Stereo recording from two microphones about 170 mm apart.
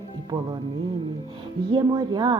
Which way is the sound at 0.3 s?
25° right (ahead or behind).